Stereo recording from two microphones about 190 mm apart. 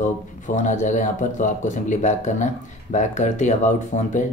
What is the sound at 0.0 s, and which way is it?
A man's voice, 40° left (ahead or behind).